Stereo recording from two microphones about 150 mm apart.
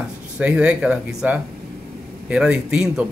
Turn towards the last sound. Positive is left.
turn(degrees=-5)  # may be behind; listen again after turning